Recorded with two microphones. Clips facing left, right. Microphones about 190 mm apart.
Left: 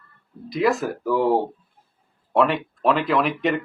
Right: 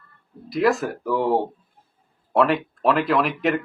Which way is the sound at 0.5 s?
Centre (ahead or behind).